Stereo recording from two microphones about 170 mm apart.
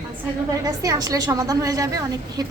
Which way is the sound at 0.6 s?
20° right (ahead or behind).